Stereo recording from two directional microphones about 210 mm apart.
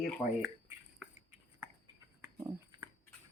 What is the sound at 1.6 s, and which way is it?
Dog, 10° right (ahead or behind).